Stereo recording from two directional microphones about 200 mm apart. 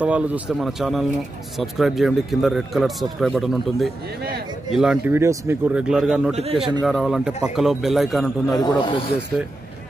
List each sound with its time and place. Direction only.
0.0 s speech: 5° right (ahead or behind)
8.5 s speech: 25° left (ahead or behind)